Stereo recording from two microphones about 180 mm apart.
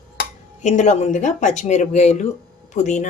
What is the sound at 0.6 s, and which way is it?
A woman's voice, 40° left (ahead or behind).